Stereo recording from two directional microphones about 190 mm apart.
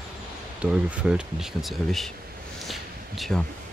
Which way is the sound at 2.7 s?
Centre (ahead or behind).